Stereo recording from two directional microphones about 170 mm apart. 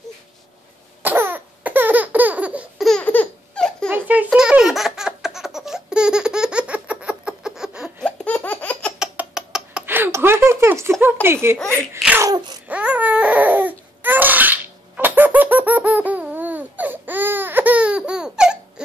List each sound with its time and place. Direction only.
1.0 s laughter: 10° right (ahead or behind)
2.9 s baby laughter: 10° left (ahead or behind)
3.9 s baby laughter: 10° right (ahead or behind); by 8.9 s 10° left (ahead or behind)
9.0 s rodents: 5° right (ahead or behind)
11.2 s speech: 15° right (ahead or behind)
11.7 s sneeze: 10° right (ahead or behind)
12.3 s a sound: 25° right (ahead or behind)
12.6 s crying: 10° right (ahead or behind)